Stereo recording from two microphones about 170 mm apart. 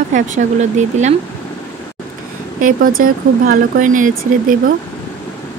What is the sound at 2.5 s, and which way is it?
Speech, 55° right (ahead or behind).